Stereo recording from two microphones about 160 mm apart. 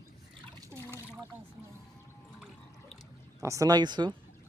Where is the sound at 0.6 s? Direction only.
15° right (ahead or behind).